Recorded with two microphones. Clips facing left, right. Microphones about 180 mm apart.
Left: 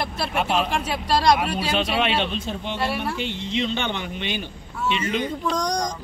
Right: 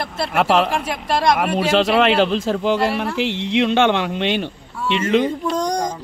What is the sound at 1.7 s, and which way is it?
A man's voice, 85° right.